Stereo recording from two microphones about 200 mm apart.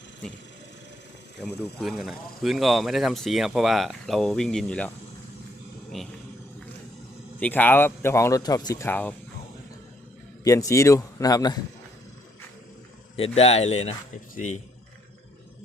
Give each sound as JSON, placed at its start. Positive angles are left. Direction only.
{"t": 1.8, "sound": "speech", "side_deg": 0}
{"t": 5.9, "sound": "speech", "side_deg": 0}
{"t": 7.3, "sound": "speech", "side_deg": 10}
{"t": 10.4, "sound": "speech", "side_deg": 15}
{"t": 13.1, "sound": "speech", "side_deg": 30}